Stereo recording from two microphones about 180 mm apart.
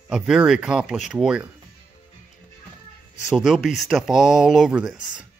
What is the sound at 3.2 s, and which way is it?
Speech, 5° right (ahead or behind).